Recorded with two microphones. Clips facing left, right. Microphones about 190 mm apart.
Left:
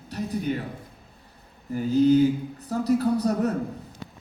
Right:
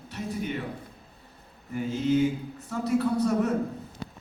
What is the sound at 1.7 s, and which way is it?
A man's voice, 35° left (ahead or behind).